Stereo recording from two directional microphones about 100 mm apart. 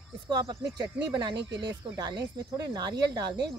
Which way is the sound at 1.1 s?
50° right (ahead or behind).